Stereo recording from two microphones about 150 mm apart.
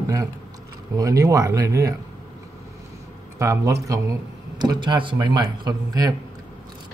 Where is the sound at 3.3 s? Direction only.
20° right (ahead or behind).